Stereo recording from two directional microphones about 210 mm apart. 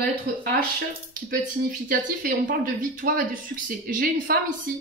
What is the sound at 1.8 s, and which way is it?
A woman's voice, 40° right (ahead or behind).